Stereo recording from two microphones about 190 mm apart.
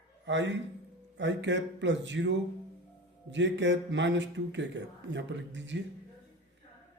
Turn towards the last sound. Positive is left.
turn(degrees=-70)  # may be behind; listen again after turning